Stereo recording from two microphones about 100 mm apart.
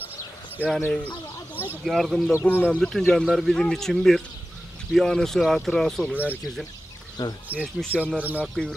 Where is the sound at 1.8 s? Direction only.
Centre (ahead or behind).